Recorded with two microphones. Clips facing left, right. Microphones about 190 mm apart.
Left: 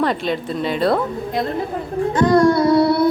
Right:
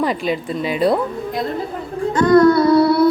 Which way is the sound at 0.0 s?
5° right (ahead or behind).